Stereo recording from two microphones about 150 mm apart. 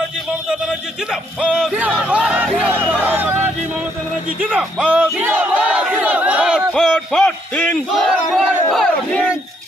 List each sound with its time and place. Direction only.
1.1 s speech: 5° right (ahead or behind)
2.0 s music: 10° right (ahead or behind)
4.5 s battle cry: 5° right (ahead or behind)
6.7 s a sound: centre (ahead or behind)
7.9 s battle cry: centre (ahead or behind)